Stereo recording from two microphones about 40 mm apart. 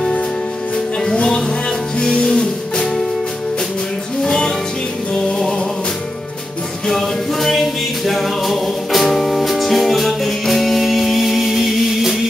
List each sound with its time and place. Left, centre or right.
1.1 s music: centre
4.2 s music: centre
6.9 s music: centre